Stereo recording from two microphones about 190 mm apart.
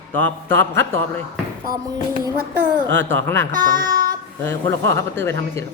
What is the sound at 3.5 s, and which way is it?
Child singing, 20° right (ahead or behind).